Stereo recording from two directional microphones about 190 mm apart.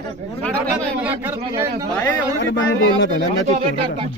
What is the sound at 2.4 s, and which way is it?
Speech, 80° left.